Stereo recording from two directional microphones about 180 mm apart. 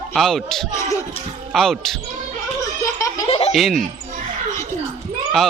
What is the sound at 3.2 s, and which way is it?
Baby laughter, 30° left (ahead or behind).